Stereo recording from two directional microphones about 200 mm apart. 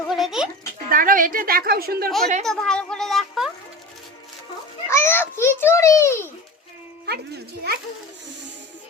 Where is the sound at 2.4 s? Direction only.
5° left (ahead or behind).